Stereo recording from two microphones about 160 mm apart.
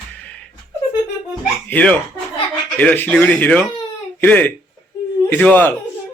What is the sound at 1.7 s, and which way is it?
Speech, 10° left (ahead or behind).